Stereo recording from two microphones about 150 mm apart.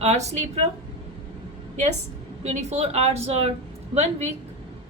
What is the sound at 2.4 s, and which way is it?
A woman's voice, 45° right (ahead or behind).